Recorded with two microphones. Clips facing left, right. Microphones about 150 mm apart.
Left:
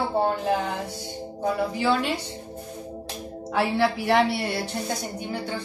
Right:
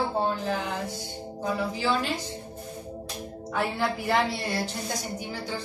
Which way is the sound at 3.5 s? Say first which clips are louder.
Left 5 dB; 80° left.